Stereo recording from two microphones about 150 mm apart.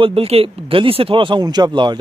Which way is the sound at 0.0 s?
40° right (ahead or behind).